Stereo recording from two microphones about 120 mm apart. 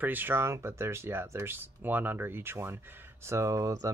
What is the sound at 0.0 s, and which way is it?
Speech, 15° right (ahead or behind).